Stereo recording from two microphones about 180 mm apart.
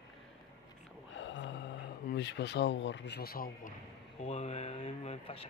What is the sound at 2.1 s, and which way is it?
Speech, 75° left (ahead or behind).